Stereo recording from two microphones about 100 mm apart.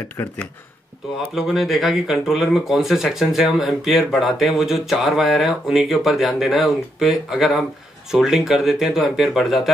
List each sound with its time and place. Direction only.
0.1 s speech: 20° left (ahead or behind)
1.3 s speech: 5° right (ahead or behind)